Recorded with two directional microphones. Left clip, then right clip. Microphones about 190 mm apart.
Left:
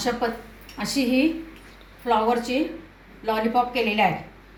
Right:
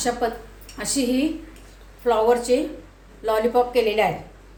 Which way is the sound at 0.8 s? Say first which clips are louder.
Left 1 dB; 50° right (ahead or behind).